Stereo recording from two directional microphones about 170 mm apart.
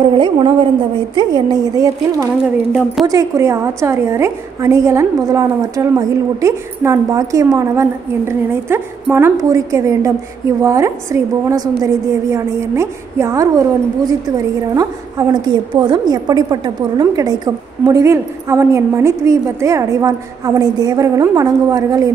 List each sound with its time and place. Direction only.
0.0 s a woman's voice: 30° right (ahead or behind)